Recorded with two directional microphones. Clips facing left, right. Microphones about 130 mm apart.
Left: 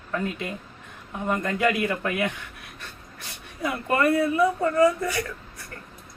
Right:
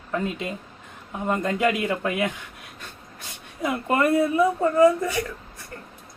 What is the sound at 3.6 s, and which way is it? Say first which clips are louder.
A man's voice: right 1 dB; 20° right (ahead or behind).